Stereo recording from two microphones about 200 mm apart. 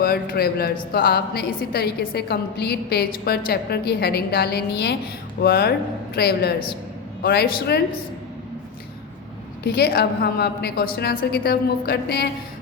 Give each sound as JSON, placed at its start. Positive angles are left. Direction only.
{"t": 0.0, "sound": "a woman's voice", "side_deg": 50}
{"t": 9.6, "sound": "a woman's voice", "side_deg": 50}